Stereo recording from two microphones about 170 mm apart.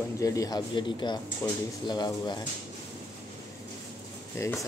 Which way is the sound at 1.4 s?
15° left (ahead or behind).